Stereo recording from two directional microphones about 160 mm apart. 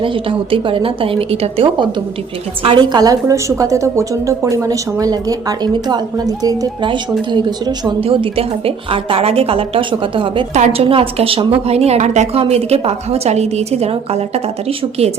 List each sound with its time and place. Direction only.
0.0 s a woman's voice: 35° right (ahead or behind)